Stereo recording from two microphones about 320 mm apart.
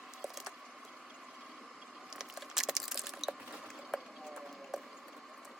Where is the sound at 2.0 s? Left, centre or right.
Centre.